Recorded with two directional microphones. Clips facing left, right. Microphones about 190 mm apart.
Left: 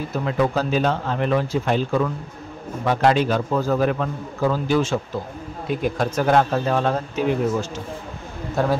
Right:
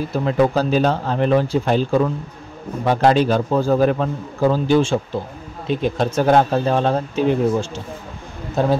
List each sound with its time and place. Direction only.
0.1 s a man's voice: 35° right (ahead or behind)
8.6 s speech: 20° right (ahead or behind)